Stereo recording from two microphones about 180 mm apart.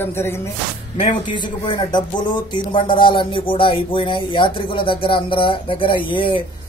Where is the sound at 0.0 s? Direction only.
15° left (ahead or behind).